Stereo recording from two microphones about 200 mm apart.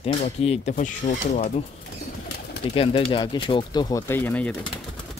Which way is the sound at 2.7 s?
30° left (ahead or behind).